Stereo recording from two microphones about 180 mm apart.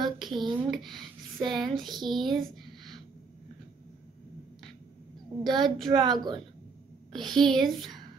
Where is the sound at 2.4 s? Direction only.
Centre (ahead or behind).